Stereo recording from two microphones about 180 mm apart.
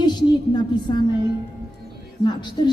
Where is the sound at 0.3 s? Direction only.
25° left (ahead or behind).